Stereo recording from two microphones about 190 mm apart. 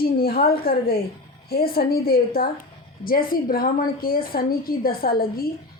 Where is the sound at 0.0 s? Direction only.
55° left (ahead or behind).